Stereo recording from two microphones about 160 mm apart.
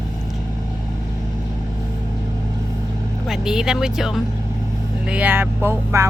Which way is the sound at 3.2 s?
5° right (ahead or behind).